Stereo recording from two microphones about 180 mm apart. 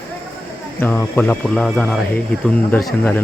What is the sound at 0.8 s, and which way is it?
Speech, 10° left (ahead or behind).